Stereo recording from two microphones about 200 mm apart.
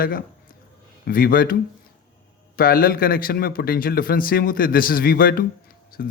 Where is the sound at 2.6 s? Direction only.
45° left (ahead or behind).